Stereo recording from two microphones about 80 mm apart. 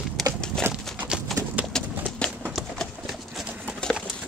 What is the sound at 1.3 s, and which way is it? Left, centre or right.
Clip-clop, centre.